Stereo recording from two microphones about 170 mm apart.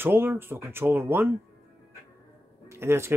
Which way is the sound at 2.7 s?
15° right (ahead or behind).